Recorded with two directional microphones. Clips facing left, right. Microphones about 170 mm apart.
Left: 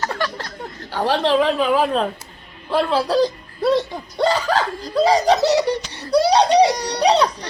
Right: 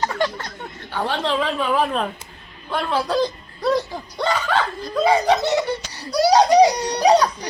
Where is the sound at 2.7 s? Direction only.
30° left (ahead or behind).